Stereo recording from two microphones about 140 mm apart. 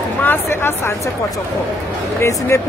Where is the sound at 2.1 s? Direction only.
20° left (ahead or behind).